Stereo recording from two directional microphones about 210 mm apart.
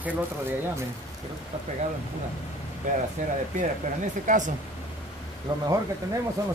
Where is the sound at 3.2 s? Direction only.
35° right (ahead or behind).